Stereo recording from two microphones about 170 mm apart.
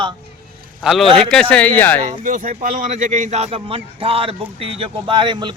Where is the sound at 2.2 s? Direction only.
50° right (ahead or behind).